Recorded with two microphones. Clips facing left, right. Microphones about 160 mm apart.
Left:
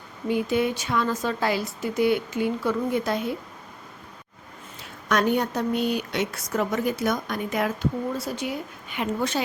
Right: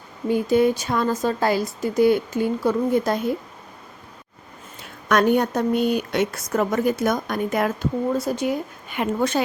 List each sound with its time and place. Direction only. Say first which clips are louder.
0.3 s speech: right 5 dB; 40° right (ahead or behind)
5.0 s a woman's voice: right 4 dB; 55° right (ahead or behind)